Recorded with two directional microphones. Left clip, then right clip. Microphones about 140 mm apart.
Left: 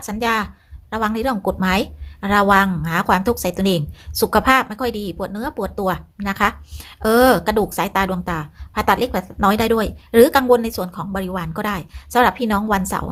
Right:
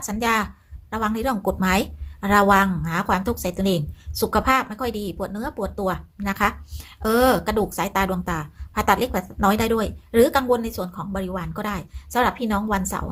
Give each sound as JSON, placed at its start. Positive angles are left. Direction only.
{"t": 0.0, "sound": "a woman's voice", "side_deg": 15}